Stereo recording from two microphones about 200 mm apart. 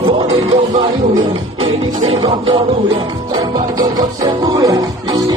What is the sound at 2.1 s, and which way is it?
Music, 25° right (ahead or behind).